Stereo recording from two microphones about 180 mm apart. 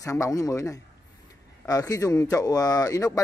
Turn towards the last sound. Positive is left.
turn(degrees=20)  # may be behind; listen again after turning